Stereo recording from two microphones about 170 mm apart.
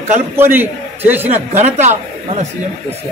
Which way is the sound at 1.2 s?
40° right (ahead or behind).